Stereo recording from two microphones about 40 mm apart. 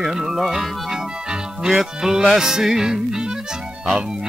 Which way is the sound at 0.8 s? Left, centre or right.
Centre.